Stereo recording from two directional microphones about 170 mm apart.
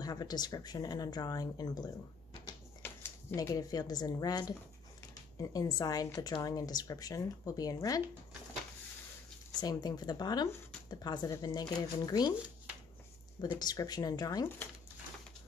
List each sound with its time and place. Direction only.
0.0 s speech: 25° left (ahead or behind)
2.8 s a sound: 10° left (ahead or behind)
3.3 s speech: 20° left (ahead or behind)
9.6 s speech: 25° left (ahead or behind)
13.6 s speech: 25° left (ahead or behind)